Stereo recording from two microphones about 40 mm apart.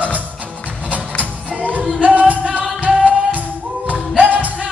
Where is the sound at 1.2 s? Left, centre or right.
Right.